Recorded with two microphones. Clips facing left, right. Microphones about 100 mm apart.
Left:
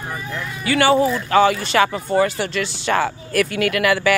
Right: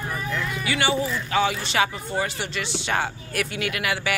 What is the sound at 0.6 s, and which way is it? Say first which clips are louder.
Speech: left 10 dB; 55° left (ahead or behind).